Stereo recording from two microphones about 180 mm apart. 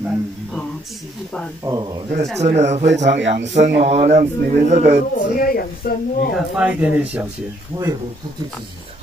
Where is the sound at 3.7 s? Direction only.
70° right (ahead or behind).